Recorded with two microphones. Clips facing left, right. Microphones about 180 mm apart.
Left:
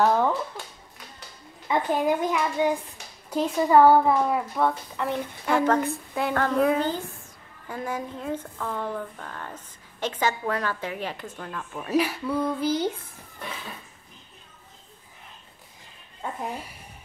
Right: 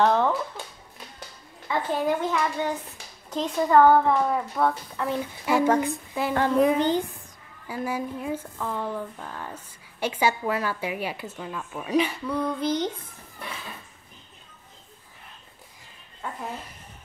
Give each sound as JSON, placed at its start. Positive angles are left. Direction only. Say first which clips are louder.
{"t": 0.0, "sound": "a sound", "louder": "even", "side_deg": 5}
{"t": 1.7, "sound": "a child's voice", "louder": "left 2 dB", "side_deg": 15}
{"t": 6.2, "sound": "a woman's voice", "louder": "right 2 dB", "side_deg": 0}
{"t": 7.6, "sound": "speech", "louder": "right 2 dB", "side_deg": -5}
{"t": 16.2, "sound": "speech", "louder": "left 2 dB", "side_deg": 15}